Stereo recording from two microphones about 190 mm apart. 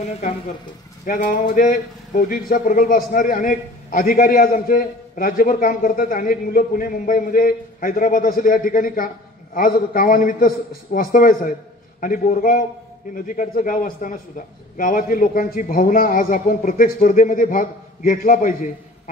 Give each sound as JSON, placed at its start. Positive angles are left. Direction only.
{"t": 1.0, "sound": "speech", "side_deg": 45}